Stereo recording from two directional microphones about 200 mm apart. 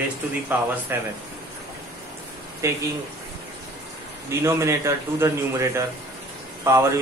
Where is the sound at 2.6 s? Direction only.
15° right (ahead or behind).